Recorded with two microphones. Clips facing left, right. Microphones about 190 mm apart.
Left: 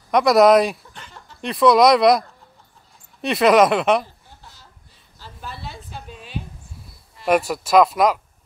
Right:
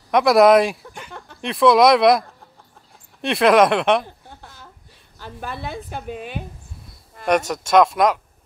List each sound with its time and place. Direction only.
0.1 s speech: centre (ahead or behind)
4.0 s a sound: 55° right (ahead or behind)
5.2 s a woman's voice: 55° right (ahead or behind)
7.2 s speech: 5° left (ahead or behind)